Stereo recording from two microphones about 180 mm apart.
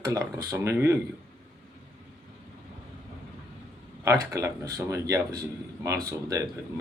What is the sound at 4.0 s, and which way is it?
Speech, 15° right (ahead or behind).